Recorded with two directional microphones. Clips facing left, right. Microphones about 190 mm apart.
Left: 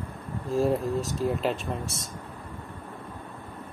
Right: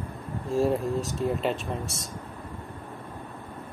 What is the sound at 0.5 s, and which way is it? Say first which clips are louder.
Speech: even; centre (ahead or behind).